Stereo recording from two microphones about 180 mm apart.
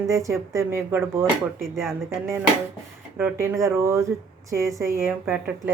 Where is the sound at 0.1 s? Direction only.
15° right (ahead or behind).